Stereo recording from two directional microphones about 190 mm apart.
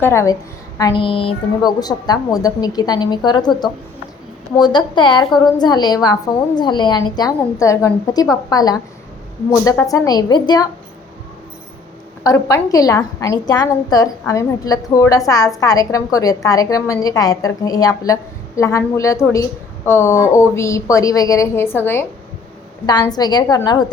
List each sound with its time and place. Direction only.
0.0 s a woman's voice: 15° left (ahead or behind)
12.2 s a woman's voice: 20° left (ahead or behind)